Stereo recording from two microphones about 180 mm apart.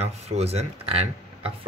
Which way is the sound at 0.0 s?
35° right (ahead or behind).